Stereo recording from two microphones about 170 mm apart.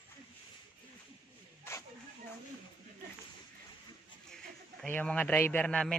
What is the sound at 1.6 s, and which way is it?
Snake, 15° left (ahead or behind).